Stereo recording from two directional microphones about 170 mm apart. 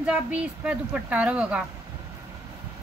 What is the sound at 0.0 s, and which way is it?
Speech, 5° right (ahead or behind).